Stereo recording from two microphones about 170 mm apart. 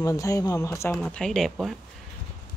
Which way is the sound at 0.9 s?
5° left (ahead or behind).